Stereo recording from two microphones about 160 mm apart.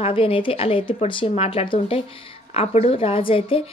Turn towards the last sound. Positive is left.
turn(degrees=35)  # may be behind; listen again after turning